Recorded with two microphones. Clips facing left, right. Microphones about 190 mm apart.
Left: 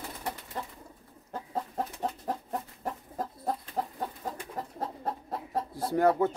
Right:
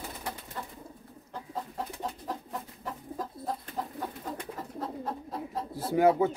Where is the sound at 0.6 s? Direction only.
30° left (ahead or behind).